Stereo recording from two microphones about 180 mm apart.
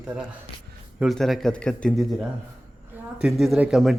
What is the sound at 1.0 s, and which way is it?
Speech, centre (ahead or behind).